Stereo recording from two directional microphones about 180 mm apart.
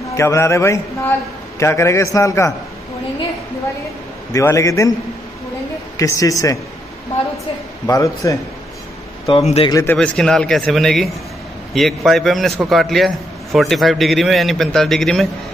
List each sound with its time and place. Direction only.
0.1 s a man's voice: 15° left (ahead or behind)
4.3 s a man's voice: 15° left (ahead or behind)
5.9 s a man's voice: 20° left (ahead or behind)
7.8 s a man's voice: 20° left (ahead or behind)
9.2 s speech: 35° left (ahead or behind)
9.7 s a man's voice: 15° left (ahead or behind)
9.9 s a man's voice: 5° left (ahead or behind)